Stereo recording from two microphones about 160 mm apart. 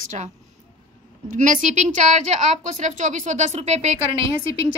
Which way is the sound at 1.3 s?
50° right (ahead or behind).